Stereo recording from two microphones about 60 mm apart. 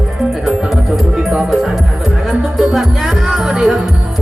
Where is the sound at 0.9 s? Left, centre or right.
Centre.